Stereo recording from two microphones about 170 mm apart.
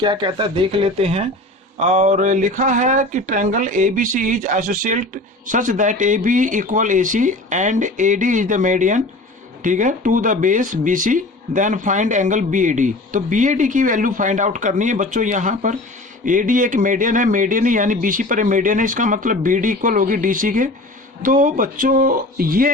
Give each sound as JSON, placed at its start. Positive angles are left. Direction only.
{"t": 0.0, "sound": "speech", "side_deg": -30}